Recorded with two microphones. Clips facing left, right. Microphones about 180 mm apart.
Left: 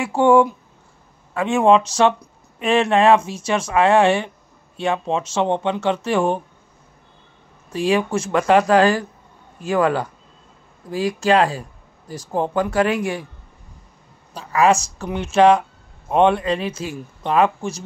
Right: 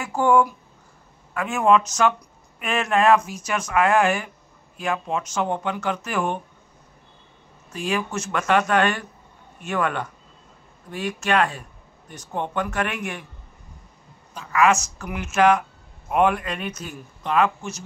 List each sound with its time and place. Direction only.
0.0 s speech: 30° left (ahead or behind)
7.7 s speech: 30° left (ahead or behind)
14.3 s speech: 35° left (ahead or behind)